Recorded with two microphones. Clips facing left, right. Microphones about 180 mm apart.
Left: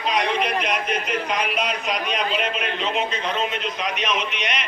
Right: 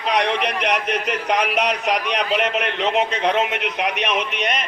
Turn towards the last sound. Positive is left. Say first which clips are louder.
# right 3 dB
turn(degrees=-60)  # may be behind; listen again after turning